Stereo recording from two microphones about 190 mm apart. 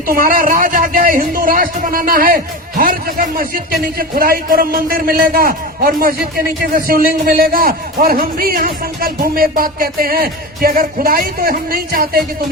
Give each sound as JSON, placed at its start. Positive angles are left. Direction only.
{"t": 0.1, "sound": "a man's voice", "side_deg": -50}